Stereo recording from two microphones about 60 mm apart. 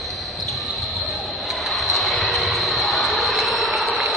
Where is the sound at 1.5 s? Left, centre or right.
Centre.